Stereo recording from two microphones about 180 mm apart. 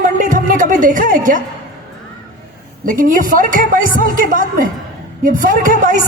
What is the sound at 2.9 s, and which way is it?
A man's voice, 50° right (ahead or behind).